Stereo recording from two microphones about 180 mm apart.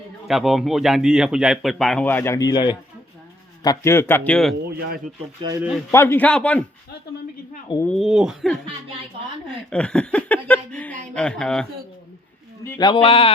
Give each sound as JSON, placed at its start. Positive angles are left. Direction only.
{"t": 0.3, "sound": "a man's voice", "side_deg": 0}
{"t": 4.8, "sound": "speech", "side_deg": -60}
{"t": 5.9, "sound": "a man's voice", "side_deg": 15}
{"t": 7.9, "sound": "speech", "side_deg": 0}
{"t": 12.8, "sound": "speech", "side_deg": 30}